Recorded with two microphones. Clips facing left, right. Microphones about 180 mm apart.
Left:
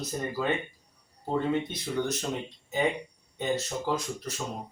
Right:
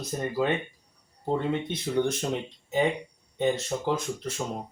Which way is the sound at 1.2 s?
25° right (ahead or behind).